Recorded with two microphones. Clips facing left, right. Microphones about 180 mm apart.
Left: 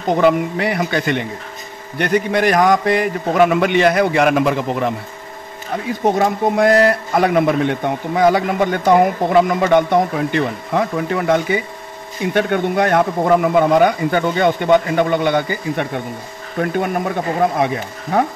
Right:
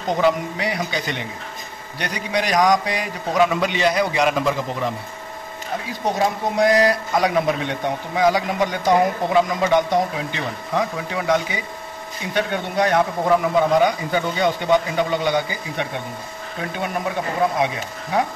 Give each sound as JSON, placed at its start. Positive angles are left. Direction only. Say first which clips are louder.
{"t": 0.2, "sound": "speech", "louder": "left 5 dB", "side_deg": 55}